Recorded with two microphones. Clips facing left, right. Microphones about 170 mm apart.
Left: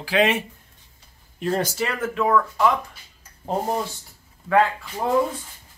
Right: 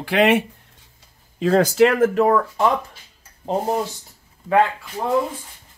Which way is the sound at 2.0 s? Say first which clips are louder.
Right 4 dB; 40° right (ahead or behind).